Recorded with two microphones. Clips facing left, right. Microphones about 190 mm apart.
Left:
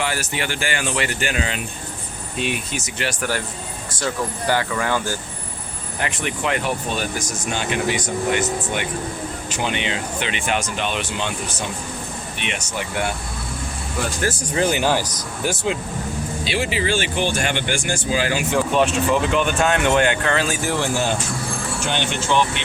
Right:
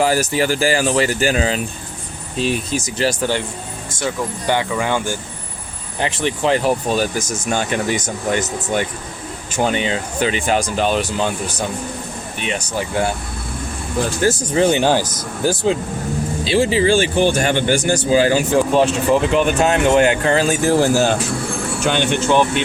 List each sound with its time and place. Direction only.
0.0 s speech: 40° right (ahead or behind); by 5.1 s 20° right (ahead or behind)
6.0 s speech: 30° right (ahead or behind)
14.2 s speech: 25° right (ahead or behind)
22.0 s speech: 50° right (ahead or behind)